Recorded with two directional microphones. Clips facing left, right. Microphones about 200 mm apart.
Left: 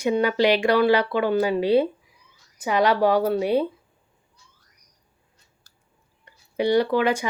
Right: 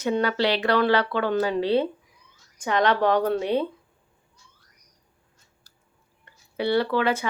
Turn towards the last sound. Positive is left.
turn(degrees=15)  # may be behind; listen again after turning